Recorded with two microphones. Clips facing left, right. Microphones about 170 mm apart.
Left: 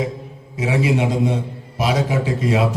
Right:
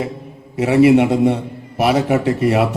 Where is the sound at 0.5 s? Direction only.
65° right (ahead or behind).